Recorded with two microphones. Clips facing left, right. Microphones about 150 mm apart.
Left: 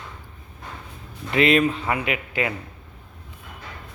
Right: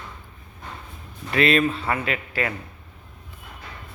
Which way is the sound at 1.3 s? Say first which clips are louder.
Left 1 dB; 20° left (ahead or behind).